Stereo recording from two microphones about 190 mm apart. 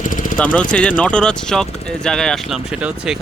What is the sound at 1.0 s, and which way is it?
Speech, 5° left (ahead or behind).